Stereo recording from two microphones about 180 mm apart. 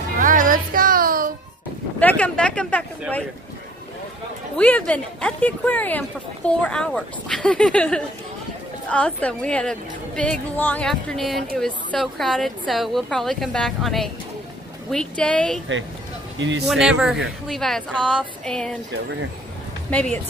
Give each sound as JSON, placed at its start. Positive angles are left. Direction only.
{"t": 0.2, "sound": "music", "side_deg": -45}
{"t": 2.0, "sound": "speech", "side_deg": 10}
{"t": 4.6, "sound": "a woman's voice", "side_deg": 10}
{"t": 16.3, "sound": "speech", "side_deg": -90}
{"t": 16.6, "sound": "a woman's voice", "side_deg": -5}
{"t": 19.9, "sound": "speech", "side_deg": 5}